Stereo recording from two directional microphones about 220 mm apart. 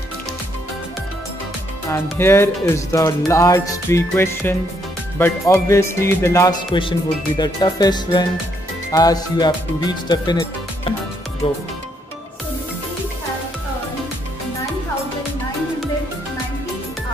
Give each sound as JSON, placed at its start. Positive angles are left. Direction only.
{"t": 2.1, "sound": "speech", "side_deg": 10}